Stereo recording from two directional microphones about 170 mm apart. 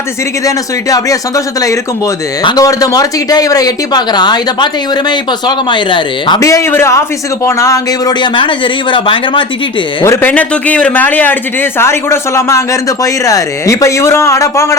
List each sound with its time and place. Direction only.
0.4 s speech: 20° left (ahead or behind)
2.4 s speech: 20° left (ahead or behind)
10.0 s a man's voice: 15° left (ahead or behind)